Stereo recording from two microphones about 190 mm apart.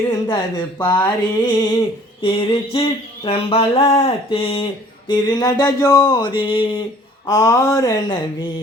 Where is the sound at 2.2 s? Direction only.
30° left (ahead or behind).